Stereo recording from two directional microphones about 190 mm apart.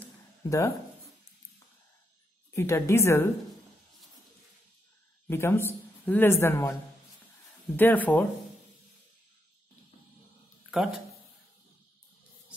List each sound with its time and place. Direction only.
0.4 s a sound: 15° left (ahead or behind)
2.5 s speech: 15° left (ahead or behind)
5.3 s speech: 15° left (ahead or behind)
10.7 s speech: centre (ahead or behind)